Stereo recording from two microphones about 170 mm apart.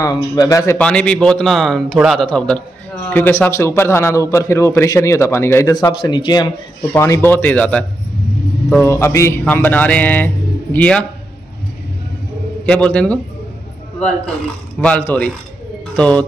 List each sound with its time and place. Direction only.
0.0 s speech: 20° left (ahead or behind)
0.7 s a man's voice: 5° left (ahead or behind)
12.6 s a man's voice: 5° left (ahead or behind)